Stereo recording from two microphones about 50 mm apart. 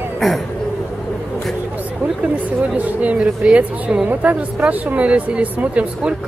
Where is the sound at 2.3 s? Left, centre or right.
Right.